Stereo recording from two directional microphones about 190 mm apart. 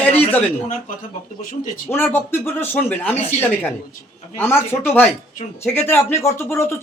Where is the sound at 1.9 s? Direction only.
10° left (ahead or behind).